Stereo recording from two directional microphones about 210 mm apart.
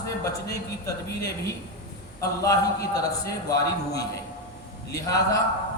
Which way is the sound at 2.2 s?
15° left (ahead or behind).